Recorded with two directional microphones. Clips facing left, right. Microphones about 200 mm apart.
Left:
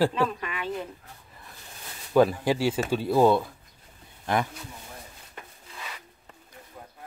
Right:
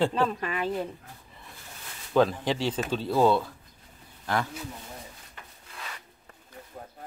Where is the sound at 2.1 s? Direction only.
10° left (ahead or behind).